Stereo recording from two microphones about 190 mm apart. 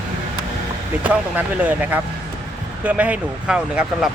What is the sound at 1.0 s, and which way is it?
Speech, 5° right (ahead or behind).